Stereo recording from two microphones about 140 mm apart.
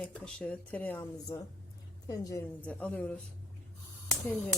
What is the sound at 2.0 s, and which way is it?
Speech, 25° left (ahead or behind).